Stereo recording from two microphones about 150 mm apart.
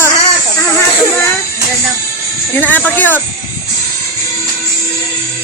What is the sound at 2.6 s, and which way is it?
Speech, 10° left (ahead or behind).